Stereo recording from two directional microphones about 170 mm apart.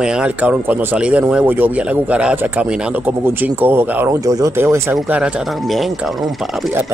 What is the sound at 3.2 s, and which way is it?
Speech, 15° right (ahead or behind).